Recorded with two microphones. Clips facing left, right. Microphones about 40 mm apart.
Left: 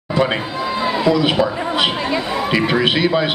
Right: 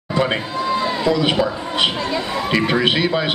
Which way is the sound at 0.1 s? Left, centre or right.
Centre.